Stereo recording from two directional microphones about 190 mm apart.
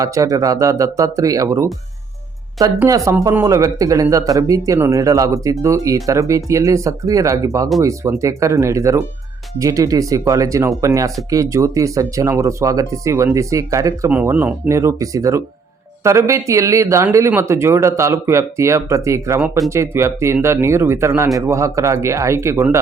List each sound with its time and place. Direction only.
0.0 s speech: 15° right (ahead or behind)
2.7 s speech: 15° right (ahead or behind)